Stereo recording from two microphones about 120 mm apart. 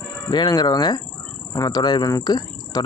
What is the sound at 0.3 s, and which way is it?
Speech, 35° left (ahead or behind).